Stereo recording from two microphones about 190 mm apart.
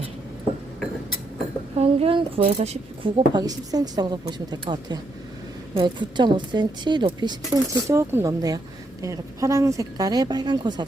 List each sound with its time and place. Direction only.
1.8 s a woman's voice: 30° right (ahead or behind)